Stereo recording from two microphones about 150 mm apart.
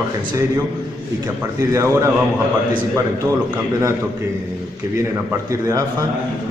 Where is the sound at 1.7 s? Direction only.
20° right (ahead or behind).